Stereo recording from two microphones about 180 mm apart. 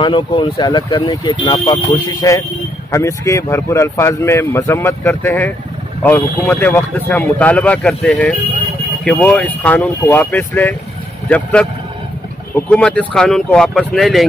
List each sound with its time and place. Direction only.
0.0 s speech: 25° left (ahead or behind); by 14.2 s centre (ahead or behind)